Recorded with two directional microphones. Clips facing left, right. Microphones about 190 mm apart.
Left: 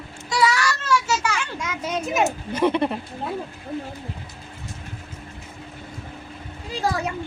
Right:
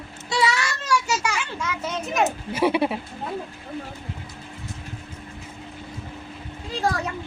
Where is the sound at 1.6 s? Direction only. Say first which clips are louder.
Left 1 dB; 10° left (ahead or behind).